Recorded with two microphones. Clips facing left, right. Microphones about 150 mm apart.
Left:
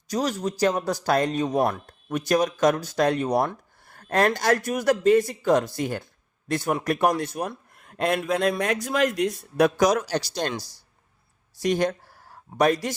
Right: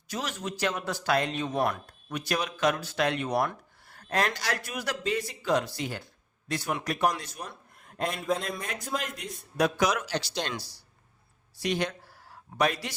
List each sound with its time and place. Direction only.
0.1 s speech: 40° left (ahead or behind)
3.8 s a man's voice: 50° left (ahead or behind); by 9.7 s 70° left (ahead or behind)
9.7 s speech: 40° left (ahead or behind)
11.5 s speech: 45° left (ahead or behind)